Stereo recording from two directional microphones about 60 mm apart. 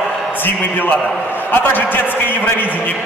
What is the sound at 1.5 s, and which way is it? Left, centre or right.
Speech, left.